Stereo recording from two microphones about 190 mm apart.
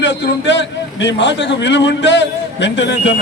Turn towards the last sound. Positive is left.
turn(degrees=65)  # may be behind; listen again after turning